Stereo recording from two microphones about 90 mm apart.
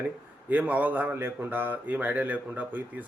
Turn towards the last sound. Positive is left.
turn(degrees=-20)  # may be behind; listen again after turning